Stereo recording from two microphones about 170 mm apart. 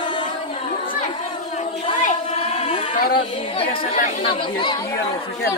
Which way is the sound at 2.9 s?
60° left (ahead or behind).